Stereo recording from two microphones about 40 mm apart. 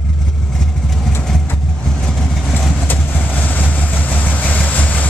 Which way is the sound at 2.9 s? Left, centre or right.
Left.